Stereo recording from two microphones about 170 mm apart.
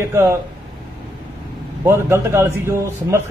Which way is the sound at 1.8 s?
15° right (ahead or behind).